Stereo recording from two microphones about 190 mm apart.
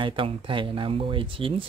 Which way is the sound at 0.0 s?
25° right (ahead or behind).